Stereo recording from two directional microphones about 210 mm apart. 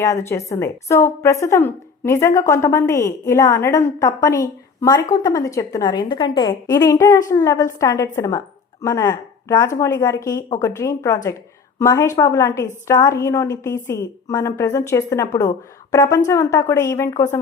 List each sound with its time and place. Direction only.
0.0 s a woman's voice: 15° left (ahead or behind)